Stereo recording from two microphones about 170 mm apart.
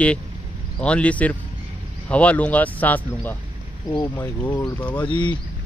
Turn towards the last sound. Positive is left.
turn(degrees=25)  # may be behind; listen again after turning